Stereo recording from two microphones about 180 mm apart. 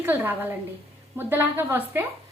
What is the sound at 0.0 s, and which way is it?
A woman's voice, 10° right (ahead or behind).